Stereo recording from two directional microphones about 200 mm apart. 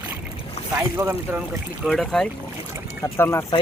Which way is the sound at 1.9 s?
Centre (ahead or behind).